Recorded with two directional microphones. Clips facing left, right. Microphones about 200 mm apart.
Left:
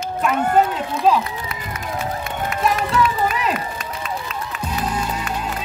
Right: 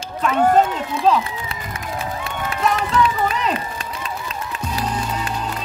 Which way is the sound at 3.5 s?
30° right (ahead or behind).